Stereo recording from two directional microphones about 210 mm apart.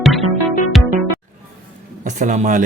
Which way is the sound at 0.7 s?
Centre (ahead or behind).